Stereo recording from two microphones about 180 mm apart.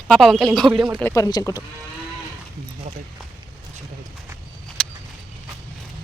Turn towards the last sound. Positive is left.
turn(degrees=5)  # may be behind; listen again after turning